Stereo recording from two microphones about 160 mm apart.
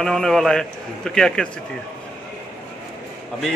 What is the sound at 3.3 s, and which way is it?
Speech, 5° left (ahead or behind).